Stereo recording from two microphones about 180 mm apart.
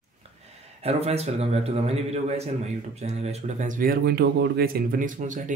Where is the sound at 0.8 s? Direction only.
35° right (ahead or behind).